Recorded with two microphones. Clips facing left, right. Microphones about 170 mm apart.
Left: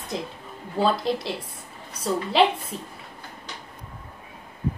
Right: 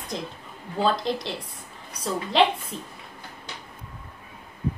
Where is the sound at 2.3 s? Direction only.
5° left (ahead or behind).